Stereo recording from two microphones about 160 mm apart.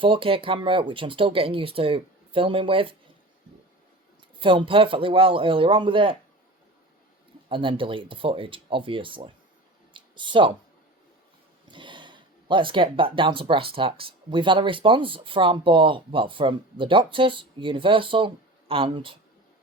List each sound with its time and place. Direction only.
0.0 s speech: 35° right (ahead or behind)
4.4 s speech: 30° right (ahead or behind)
7.5 s speech: 30° right (ahead or behind)
9.9 s a sound: 30° right (ahead or behind)
11.7 s speech: 30° right (ahead or behind)